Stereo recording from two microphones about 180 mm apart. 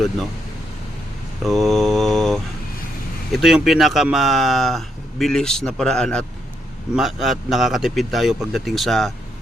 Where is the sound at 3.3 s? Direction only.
5° right (ahead or behind).